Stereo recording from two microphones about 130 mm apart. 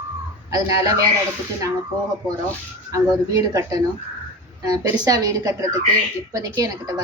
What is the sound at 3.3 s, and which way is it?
A woman's voice, 30° right (ahead or behind).